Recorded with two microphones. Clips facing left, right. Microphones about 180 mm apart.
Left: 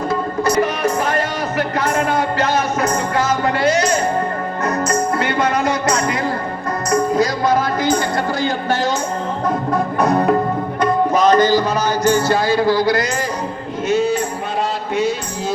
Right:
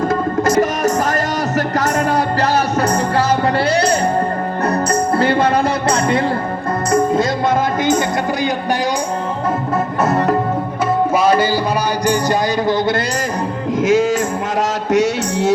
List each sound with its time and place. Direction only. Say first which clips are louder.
0.1 s music: right 3 dB; 45° right (ahead or behind); by 8.4 s 20° right (ahead or behind)
10.0 s music: left 1 dB; 5° right (ahead or behind)
11.1 s tabla: left 3 dB; 10° right (ahead or behind)
12.0 s speech: left 2 dB; 15° right (ahead or behind)
13.8 s music: right 2 dB; 90° right
14.9 s music: right 5 dB; 80° right